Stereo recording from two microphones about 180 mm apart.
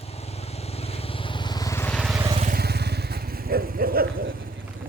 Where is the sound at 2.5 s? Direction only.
65° right (ahead or behind).